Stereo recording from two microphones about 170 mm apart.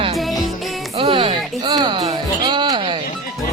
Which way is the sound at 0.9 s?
30° right (ahead or behind).